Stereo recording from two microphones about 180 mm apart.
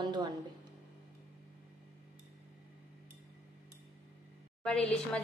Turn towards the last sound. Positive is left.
turn(degrees=5)  # may be behind; listen again after turning